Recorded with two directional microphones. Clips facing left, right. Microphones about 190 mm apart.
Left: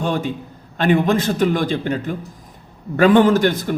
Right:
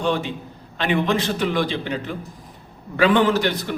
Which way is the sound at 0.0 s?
45° left (ahead or behind).